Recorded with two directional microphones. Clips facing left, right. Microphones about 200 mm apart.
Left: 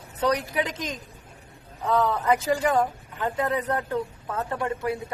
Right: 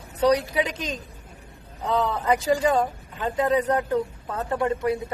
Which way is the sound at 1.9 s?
15° right (ahead or behind).